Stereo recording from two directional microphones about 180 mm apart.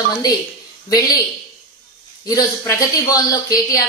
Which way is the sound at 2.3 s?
20° left (ahead or behind).